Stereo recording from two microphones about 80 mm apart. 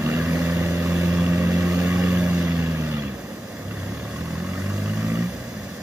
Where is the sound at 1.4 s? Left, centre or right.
Right.